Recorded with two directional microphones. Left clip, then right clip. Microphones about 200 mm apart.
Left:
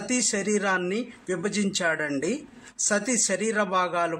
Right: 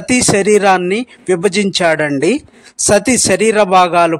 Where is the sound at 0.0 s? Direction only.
40° right (ahead or behind).